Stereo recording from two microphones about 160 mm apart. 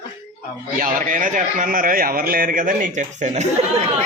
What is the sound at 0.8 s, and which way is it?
A man's voice, 55° right (ahead or behind).